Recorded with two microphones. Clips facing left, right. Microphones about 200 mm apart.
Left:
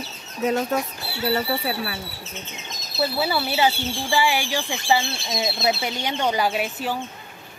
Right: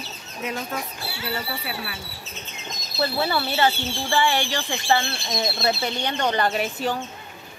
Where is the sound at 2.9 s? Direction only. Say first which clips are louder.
Left 1 dB; 5° left (ahead or behind).